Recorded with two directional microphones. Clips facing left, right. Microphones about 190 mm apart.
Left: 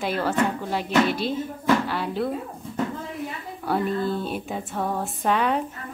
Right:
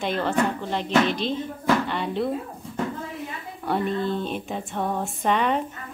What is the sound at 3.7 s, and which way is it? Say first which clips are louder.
Speech: even; 5° left (ahead or behind).